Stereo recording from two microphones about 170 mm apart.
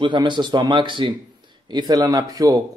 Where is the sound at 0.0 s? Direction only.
30° right (ahead or behind).